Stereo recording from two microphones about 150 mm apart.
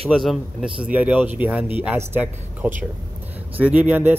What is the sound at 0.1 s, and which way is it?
Speech, centre (ahead or behind).